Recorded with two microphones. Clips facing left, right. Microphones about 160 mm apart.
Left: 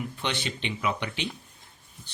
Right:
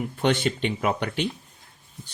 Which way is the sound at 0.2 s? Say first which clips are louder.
Right 12 dB; 45° right (ahead or behind).